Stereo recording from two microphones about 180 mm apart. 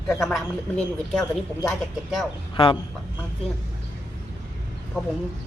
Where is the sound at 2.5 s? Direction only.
30° left (ahead or behind).